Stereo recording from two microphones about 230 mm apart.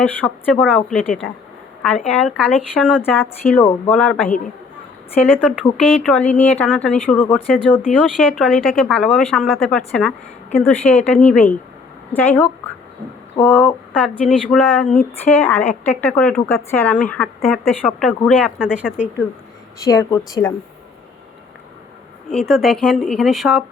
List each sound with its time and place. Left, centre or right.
0.0 s speech: centre
2.1 s speech: centre
19.8 s speech: centre
22.3 s speech: centre